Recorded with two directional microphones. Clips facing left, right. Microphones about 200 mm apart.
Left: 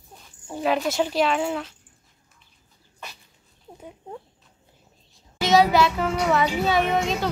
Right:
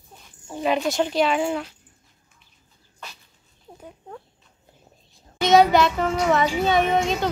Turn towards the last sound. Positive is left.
turn(degrees=0)  # may be behind; listen again after turning